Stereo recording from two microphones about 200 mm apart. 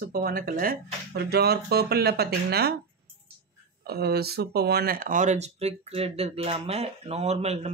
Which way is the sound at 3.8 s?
50° right (ahead or behind).